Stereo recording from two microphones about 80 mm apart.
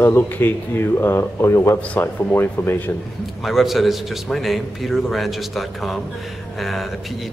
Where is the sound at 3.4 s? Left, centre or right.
Centre.